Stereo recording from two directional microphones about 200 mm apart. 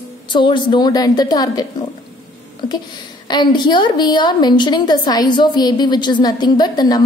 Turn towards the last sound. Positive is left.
turn(degrees=20)  # may be behind; listen again after turning